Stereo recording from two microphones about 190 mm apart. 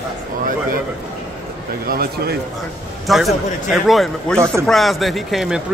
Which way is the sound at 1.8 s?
50° right (ahead or behind).